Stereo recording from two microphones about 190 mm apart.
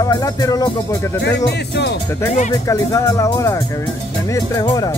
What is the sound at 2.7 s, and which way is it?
Speech, 15° left (ahead or behind).